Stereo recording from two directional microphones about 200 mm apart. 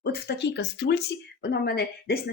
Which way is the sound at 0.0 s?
55° left (ahead or behind).